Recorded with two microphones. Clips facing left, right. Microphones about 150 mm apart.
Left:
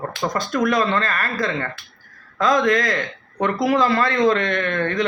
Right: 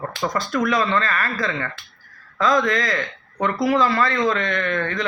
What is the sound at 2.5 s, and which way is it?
Speech, 50° left (ahead or behind).